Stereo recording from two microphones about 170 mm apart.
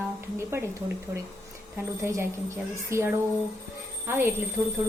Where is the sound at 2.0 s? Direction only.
15° right (ahead or behind).